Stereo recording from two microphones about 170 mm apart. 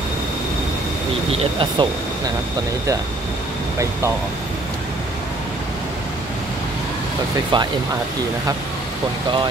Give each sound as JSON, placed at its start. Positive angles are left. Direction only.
{"t": 1.4, "sound": "speech", "side_deg": -30}
{"t": 7.5, "sound": "speech", "side_deg": -30}